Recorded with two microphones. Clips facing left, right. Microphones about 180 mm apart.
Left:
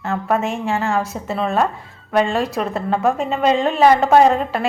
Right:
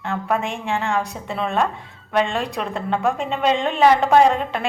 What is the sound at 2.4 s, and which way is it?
A woman's voice, 5° left (ahead or behind).